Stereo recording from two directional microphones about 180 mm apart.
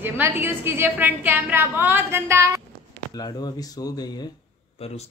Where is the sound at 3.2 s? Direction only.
20° left (ahead or behind).